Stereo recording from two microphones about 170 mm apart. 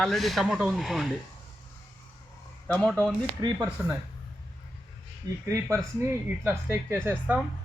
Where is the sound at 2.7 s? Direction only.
5° left (ahead or behind).